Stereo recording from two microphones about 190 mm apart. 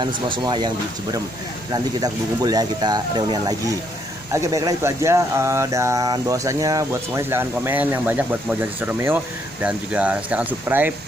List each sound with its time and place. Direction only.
0.0 s speech: 25° right (ahead or behind)
1.7 s speech: 20° right (ahead or behind)